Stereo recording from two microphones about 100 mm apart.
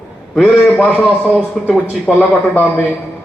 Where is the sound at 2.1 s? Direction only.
15° left (ahead or behind).